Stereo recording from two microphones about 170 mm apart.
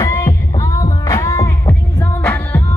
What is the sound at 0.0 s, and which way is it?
Music, 20° left (ahead or behind).